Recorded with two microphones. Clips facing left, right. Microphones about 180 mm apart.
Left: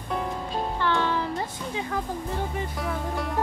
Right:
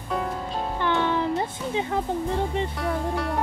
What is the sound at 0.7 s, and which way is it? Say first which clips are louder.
Music: right 2 dB; 15° right (ahead or behind).